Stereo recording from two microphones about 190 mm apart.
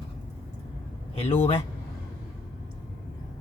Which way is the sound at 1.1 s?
30° left (ahead or behind).